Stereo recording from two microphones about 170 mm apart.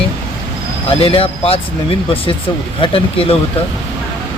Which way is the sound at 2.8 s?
30° left (ahead or behind).